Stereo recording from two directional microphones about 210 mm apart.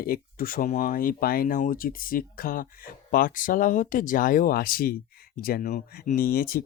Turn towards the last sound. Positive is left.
turn(degrees=45)  # may be behind; listen again after turning